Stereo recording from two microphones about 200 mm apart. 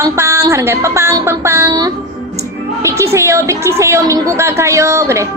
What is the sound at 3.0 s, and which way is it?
A woman's voice, 15° right (ahead or behind).